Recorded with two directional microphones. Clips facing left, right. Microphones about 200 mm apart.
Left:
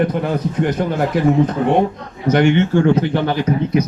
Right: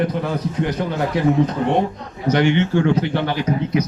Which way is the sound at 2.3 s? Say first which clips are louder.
Left 3 dB; 50° left (ahead or behind).